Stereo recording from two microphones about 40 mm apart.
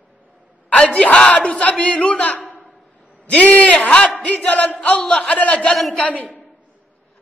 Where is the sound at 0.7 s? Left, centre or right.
Left.